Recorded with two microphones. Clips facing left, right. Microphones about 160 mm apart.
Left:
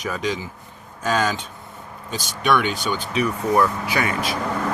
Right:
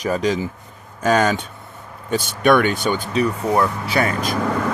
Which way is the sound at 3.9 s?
35° right (ahead or behind).